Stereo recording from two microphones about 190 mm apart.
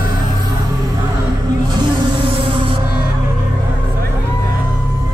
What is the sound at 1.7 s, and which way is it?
Music, 25° right (ahead or behind).